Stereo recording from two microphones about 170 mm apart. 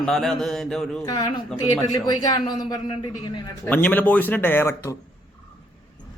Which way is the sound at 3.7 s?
10° left (ahead or behind).